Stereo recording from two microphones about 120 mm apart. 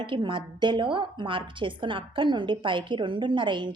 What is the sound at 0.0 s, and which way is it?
A woman's voice, 40° right (ahead or behind).